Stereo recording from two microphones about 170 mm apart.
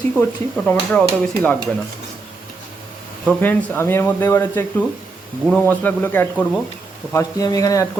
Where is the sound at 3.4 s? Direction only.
10° left (ahead or behind).